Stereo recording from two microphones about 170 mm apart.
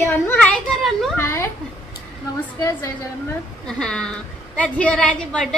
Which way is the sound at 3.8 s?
5° left (ahead or behind).